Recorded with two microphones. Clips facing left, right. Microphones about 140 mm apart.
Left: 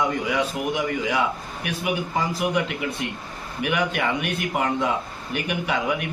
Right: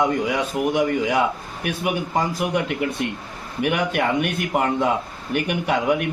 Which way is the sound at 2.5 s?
45° right (ahead or behind).